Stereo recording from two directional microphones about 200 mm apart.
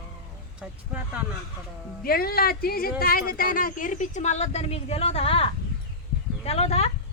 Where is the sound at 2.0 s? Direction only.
50° left (ahead or behind); by 6.9 s 30° left (ahead or behind).